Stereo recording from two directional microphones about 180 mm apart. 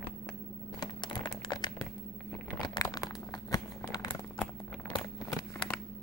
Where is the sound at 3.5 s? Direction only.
20° left (ahead or behind).